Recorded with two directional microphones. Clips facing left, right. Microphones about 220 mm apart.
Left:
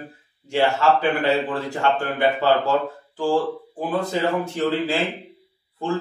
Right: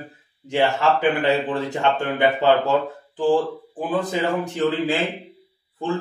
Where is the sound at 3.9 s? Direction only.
20° right (ahead or behind).